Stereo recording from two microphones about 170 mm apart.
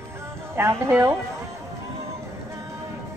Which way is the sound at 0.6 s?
15° right (ahead or behind).